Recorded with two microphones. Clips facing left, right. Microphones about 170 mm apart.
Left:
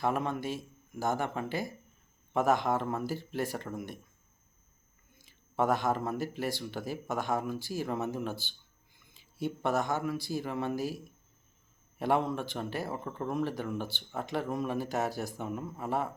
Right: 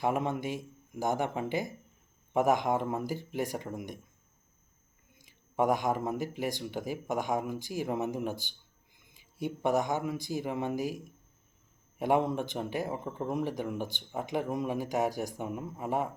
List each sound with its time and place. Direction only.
0.0 s speech: 20° right (ahead or behind)
5.1 s speech: 15° right (ahead or behind)